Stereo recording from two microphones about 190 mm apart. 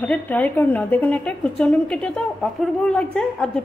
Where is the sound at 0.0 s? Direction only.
10° left (ahead or behind).